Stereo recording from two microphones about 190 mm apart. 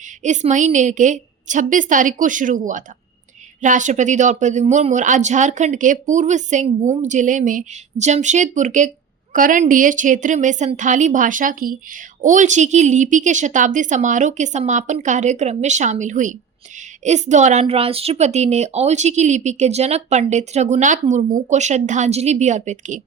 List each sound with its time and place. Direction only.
0.2 s a woman's voice: 40° right (ahead or behind)